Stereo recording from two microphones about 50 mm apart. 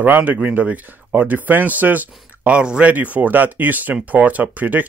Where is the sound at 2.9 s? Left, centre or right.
Right.